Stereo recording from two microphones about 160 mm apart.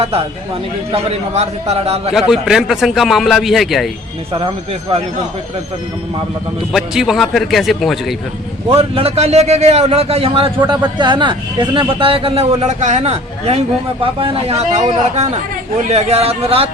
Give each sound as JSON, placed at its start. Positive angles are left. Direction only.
{"t": 0.9, "sound": "a man's voice", "side_deg": -40}
{"t": 2.1, "sound": "a man's voice", "side_deg": -5}
{"t": 4.4, "sound": "a man's voice", "side_deg": -35}
{"t": 6.7, "sound": "a man's voice", "side_deg": -5}
{"t": 8.7, "sound": "a man's voice", "side_deg": -40}
{"t": 14.6, "sound": "a man's voice", "side_deg": -45}